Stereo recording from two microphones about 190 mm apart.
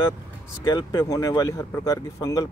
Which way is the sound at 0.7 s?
20° left (ahead or behind).